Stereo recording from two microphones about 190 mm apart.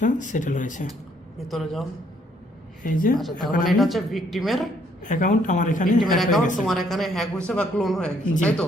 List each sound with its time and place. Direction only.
0.0 s speech: 40° left (ahead or behind)
1.5 s speech: centre (ahead or behind)
2.8 s a woman's voice: 45° left (ahead or behind)
3.7 s speech: centre (ahead or behind)
5.0 s speech: 40° left (ahead or behind)
6.0 s speech: centre (ahead or behind)